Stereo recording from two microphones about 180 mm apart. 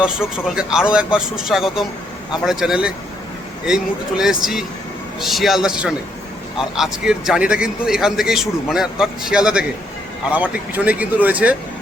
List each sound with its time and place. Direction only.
0.0 s a man's voice: 5° right (ahead or behind)